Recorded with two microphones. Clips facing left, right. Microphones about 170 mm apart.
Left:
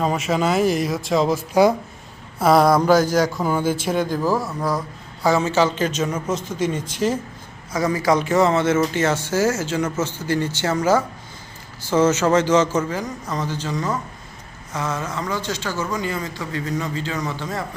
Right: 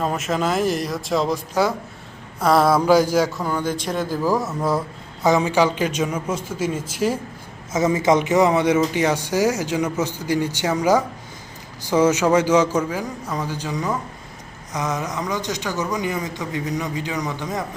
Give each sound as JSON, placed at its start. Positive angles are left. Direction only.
{"t": 0.0, "sound": "speech", "side_deg": 0}
{"t": 2.4, "sound": "speech", "side_deg": 0}
{"t": 3.4, "sound": "speech", "side_deg": 10}
{"t": 4.4, "sound": "speech", "side_deg": -25}
{"t": 7.7, "sound": "speech", "side_deg": -20}